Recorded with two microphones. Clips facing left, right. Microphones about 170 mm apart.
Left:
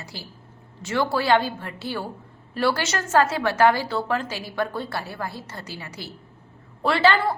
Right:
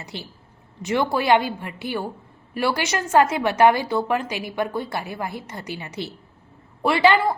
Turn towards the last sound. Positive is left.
turn(degrees=-15)  # may be behind; listen again after turning